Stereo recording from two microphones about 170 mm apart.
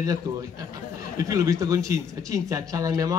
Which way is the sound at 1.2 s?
20° right (ahead or behind).